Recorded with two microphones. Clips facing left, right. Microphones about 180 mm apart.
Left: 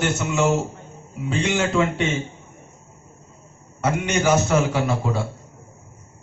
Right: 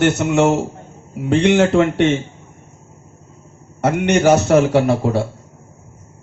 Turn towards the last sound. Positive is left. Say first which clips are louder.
# right 8 dB
turn(degrees=-60)  # may be behind; listen again after turning